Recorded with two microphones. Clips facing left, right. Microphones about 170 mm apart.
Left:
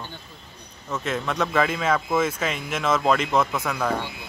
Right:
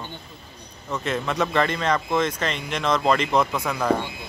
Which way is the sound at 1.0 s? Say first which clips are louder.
Right 1 dB; centre (ahead or behind).